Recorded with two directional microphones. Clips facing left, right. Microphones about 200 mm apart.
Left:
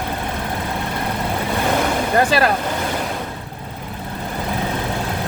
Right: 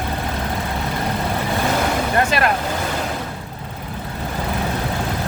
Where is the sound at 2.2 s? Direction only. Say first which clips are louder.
Left 3 dB; 35° left (ahead or behind).